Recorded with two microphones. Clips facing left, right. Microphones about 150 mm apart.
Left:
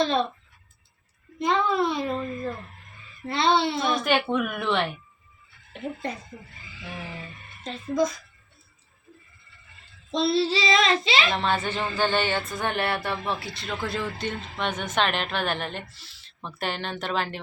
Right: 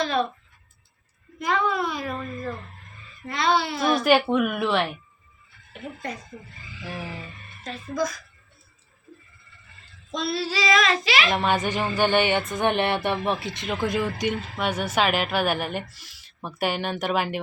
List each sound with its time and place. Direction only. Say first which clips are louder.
0.0 s child singing: left 1 dB; 25° left (ahead or behind)
1.4 s child singing: left 1 dB; 25° left (ahead or behind)
3.8 s a woman's voice: right 4 dB; 5° right (ahead or behind)
7.6 s child singing: left 3 dB; 25° left (ahead or behind)
10.1 s child singing: left 5 dB; 30° left (ahead or behind)
11.3 s speech: right 2 dB; 15° right (ahead or behind)